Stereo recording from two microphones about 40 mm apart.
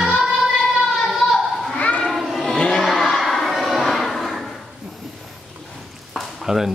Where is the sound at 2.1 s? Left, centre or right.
Centre.